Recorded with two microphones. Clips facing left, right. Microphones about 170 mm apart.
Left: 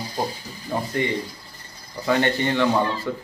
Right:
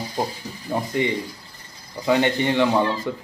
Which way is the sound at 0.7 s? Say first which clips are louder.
Right 1 dB; 15° right (ahead or behind).